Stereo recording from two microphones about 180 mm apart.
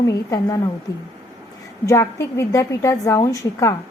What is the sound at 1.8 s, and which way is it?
A woman's voice, 15° left (ahead or behind).